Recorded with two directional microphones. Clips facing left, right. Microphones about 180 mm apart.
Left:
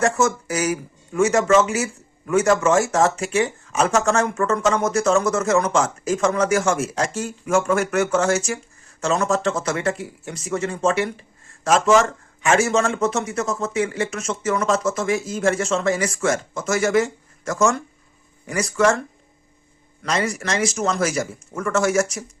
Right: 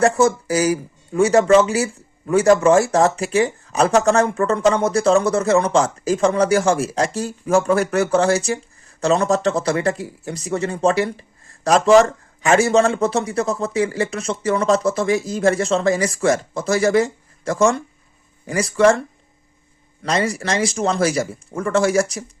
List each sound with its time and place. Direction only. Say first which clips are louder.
0.0 s speech: right 4 dB; 35° right (ahead or behind)